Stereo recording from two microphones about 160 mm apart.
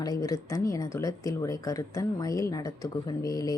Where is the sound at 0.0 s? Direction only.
25° left (ahead or behind).